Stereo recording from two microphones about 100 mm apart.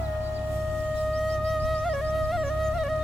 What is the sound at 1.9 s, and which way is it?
Music, 5° left (ahead or behind).